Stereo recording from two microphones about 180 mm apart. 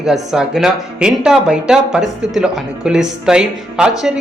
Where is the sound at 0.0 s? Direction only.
Centre (ahead or behind).